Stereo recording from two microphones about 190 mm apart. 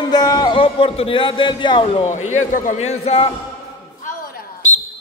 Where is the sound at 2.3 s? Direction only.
40° left (ahead or behind).